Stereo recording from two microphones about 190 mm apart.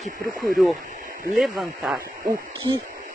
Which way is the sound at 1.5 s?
10° right (ahead or behind).